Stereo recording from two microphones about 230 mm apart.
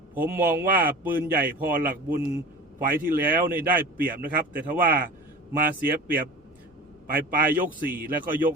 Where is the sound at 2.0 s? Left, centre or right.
Centre.